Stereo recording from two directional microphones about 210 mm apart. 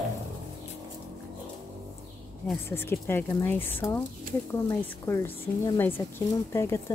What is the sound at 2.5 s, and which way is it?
Speech, 10° left (ahead or behind).